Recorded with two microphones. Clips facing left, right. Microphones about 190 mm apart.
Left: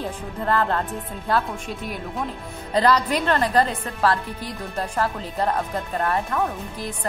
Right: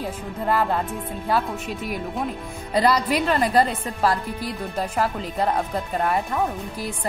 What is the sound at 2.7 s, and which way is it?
A woman's voice, 10° right (ahead or behind).